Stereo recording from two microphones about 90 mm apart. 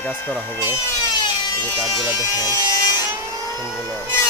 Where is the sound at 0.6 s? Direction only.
35° left (ahead or behind).